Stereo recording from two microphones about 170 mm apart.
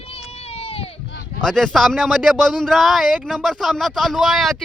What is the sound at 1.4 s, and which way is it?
Speech, 5° left (ahead or behind).